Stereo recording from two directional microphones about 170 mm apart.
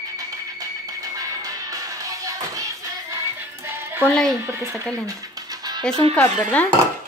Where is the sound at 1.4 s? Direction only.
20° right (ahead or behind).